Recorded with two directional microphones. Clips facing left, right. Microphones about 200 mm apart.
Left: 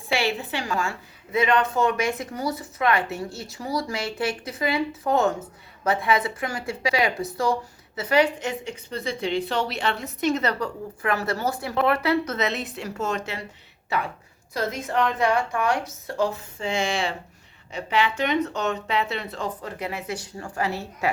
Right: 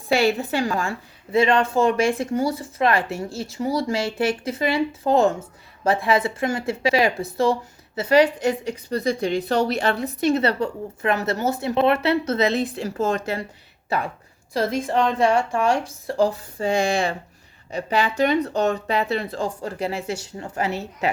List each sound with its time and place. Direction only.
0.1 s a woman's voice: 45° right (ahead or behind)
14.5 s a woman's voice: 30° right (ahead or behind)